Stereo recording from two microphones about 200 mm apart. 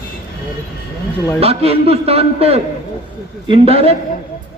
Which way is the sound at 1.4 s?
30° right (ahead or behind).